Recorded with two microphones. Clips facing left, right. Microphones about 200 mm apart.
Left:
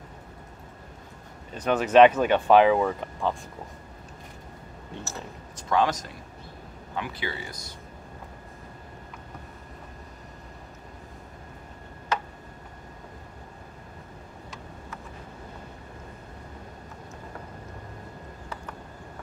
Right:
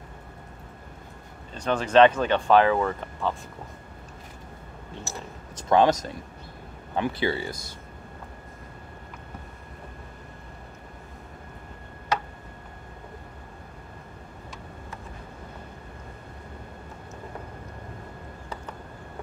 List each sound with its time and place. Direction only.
1.5 s speech: 10° left (ahead or behind)
5.6 s speech: 20° right (ahead or behind)
7.0 s speech: 30° right (ahead or behind)